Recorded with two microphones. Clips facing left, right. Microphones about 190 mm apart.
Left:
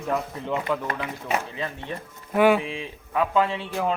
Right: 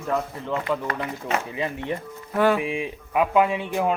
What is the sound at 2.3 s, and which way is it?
Speech, 10° left (ahead or behind).